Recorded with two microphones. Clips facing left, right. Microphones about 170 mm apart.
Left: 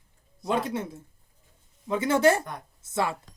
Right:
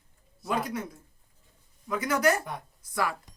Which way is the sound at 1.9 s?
25° left (ahead or behind).